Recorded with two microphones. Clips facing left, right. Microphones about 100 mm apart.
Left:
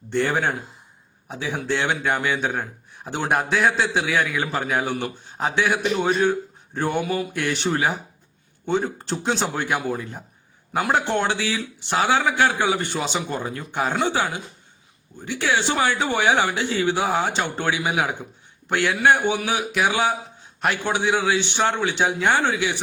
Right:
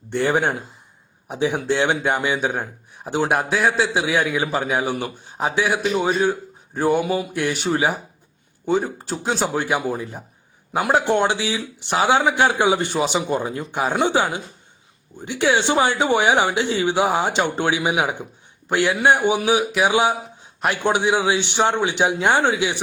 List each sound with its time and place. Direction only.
0.1 s speech: 15° right (ahead or behind)
3.3 s a man's voice: centre (ahead or behind)
3.9 s speech: 20° right (ahead or behind)